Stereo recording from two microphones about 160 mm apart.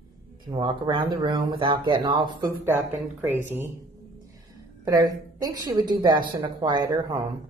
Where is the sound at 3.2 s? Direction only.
15° right (ahead or behind).